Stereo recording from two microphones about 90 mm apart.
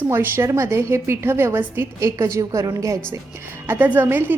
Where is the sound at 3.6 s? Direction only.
20° right (ahead or behind).